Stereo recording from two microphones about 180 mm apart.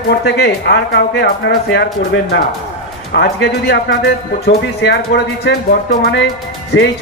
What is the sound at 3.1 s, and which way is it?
A man's voice, 65° left (ahead or behind).